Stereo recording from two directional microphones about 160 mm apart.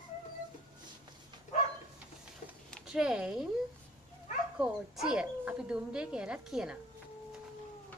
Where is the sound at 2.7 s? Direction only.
5° right (ahead or behind).